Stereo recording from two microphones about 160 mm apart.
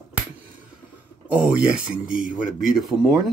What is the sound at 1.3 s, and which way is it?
Speech, 10° right (ahead or behind).